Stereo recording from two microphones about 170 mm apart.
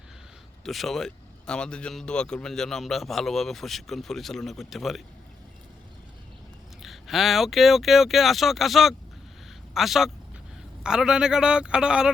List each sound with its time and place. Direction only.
0.6 s speech: centre (ahead or behind)
6.8 s speech: centre (ahead or behind)